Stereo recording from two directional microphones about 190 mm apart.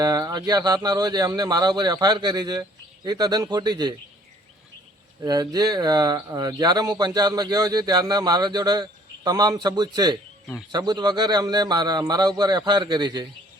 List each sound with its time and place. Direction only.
0.0 s speech: 20° right (ahead or behind)
5.2 s speech: 20° right (ahead or behind)